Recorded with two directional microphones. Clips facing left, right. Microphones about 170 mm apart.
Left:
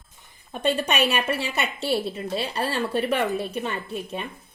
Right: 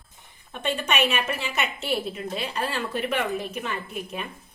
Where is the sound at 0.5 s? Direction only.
35° left (ahead or behind).